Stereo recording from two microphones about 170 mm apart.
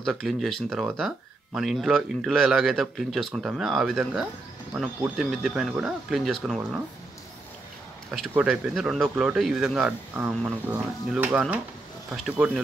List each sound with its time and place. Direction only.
0.0 s speech: centre (ahead or behind)
8.1 s speech: 5° right (ahead or behind)